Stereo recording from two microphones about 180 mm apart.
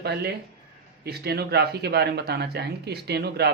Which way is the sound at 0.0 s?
65° right (ahead or behind).